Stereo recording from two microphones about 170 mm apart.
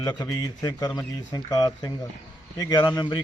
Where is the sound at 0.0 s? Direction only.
20° left (ahead or behind).